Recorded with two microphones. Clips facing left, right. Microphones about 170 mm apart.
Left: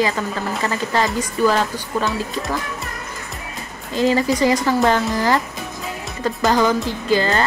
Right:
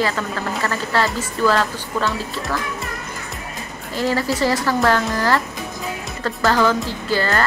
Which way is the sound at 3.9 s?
20° left (ahead or behind).